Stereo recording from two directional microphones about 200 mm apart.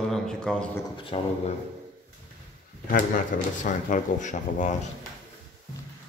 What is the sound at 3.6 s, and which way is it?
Speech, 40° left (ahead or behind).